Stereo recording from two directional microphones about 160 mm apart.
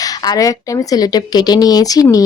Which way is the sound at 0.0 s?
25° left (ahead or behind).